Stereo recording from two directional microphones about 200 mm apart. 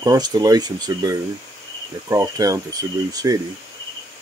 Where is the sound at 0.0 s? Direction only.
20° right (ahead or behind).